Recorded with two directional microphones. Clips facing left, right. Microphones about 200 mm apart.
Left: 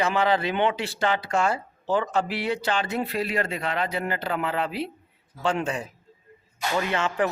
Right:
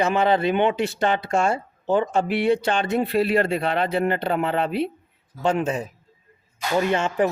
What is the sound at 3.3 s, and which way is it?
A man's voice, 30° right (ahead or behind).